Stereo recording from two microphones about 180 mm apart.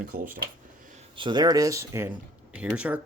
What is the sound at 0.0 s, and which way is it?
Speech, 55° right (ahead or behind).